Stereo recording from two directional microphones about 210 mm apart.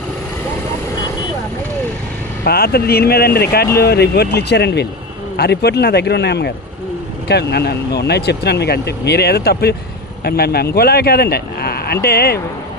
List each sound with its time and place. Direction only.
2.4 s speech: 45° left (ahead or behind)